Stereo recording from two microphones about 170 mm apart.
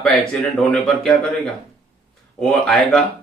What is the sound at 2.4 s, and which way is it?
Speech, centre (ahead or behind).